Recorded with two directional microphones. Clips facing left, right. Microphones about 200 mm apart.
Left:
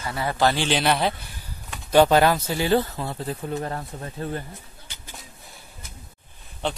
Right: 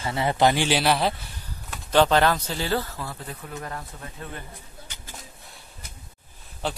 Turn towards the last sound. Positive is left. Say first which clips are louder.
# left 2 dB
turn(degrees=-5)  # may be behind; listen again after turning